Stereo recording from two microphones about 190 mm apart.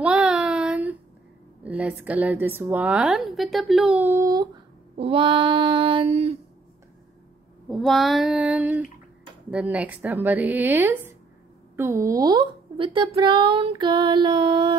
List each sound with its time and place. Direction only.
0.0 s child singing: 5° right (ahead or behind)
1.6 s a woman's voice: 5° right (ahead or behind)
4.9 s speech: 30° right (ahead or behind)
7.7 s female singing: centre (ahead or behind)
9.5 s a woman's voice: 5° right (ahead or behind); by 14.8 s 25° right (ahead or behind)